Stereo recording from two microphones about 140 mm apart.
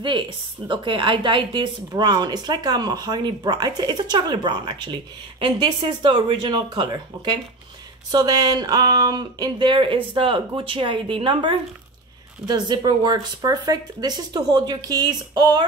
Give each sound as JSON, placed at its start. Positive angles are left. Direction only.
{"t": 0.7, "sound": "speech", "side_deg": -35}